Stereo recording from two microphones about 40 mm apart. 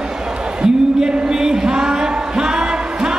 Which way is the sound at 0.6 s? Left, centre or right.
Centre.